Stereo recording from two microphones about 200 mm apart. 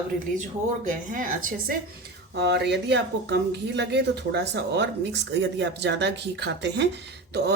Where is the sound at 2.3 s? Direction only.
55° right (ahead or behind).